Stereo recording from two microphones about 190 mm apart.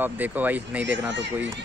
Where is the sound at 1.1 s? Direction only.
65° right (ahead or behind).